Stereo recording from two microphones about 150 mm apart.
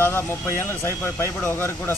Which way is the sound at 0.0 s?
15° left (ahead or behind).